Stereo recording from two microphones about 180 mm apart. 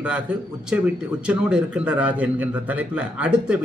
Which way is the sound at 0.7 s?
5° right (ahead or behind).